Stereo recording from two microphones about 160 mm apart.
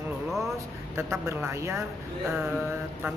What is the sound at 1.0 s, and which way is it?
Speech, 15° right (ahead or behind).